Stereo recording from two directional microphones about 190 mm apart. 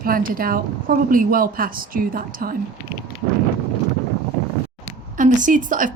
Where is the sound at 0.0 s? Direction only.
50° right (ahead or behind).